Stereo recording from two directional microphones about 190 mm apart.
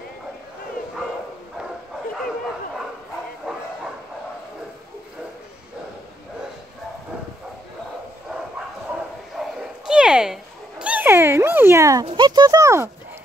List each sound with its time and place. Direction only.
3.5 s bow-wow: 5° right (ahead or behind)
9.6 s a sound: 5° right (ahead or behind)
12.1 s speech: 25° right (ahead or behind)